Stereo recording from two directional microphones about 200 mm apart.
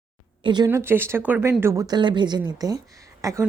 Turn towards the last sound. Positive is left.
turn(degrees=-15)  # may be behind; listen again after turning